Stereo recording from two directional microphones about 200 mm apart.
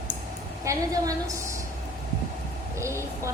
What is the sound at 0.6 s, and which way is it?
Speech, 15° right (ahead or behind).